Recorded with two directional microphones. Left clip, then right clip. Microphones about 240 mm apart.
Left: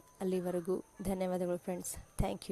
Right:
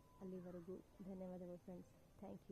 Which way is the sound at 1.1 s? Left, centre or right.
Left.